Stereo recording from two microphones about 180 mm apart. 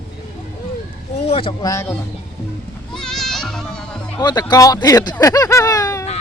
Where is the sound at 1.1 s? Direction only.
35° left (ahead or behind); by 1.9 s 20° left (ahead or behind).